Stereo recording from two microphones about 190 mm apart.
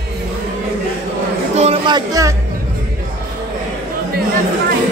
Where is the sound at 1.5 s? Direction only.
35° right (ahead or behind); by 2.3 s 20° right (ahead or behind).